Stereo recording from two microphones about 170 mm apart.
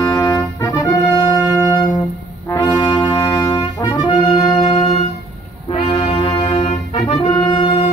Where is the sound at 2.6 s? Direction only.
25° left (ahead or behind).